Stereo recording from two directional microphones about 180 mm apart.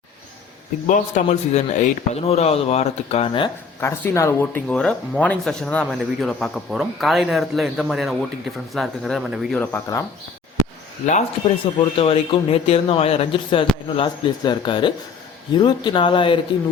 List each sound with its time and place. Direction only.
0.9 s a man's voice: 45° left (ahead or behind); by 3.5 s 25° left (ahead or behind)
3.8 s speech: 15° left (ahead or behind)
9.6 s speech: 10° left (ahead or behind)
11.0 s a man's voice: 40° left (ahead or behind)